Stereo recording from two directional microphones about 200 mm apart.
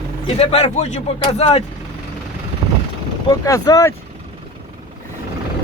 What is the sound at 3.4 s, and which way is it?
Speech, 15° left (ahead or behind).